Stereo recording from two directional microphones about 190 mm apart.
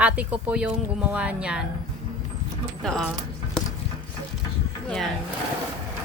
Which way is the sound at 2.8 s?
Centre (ahead or behind).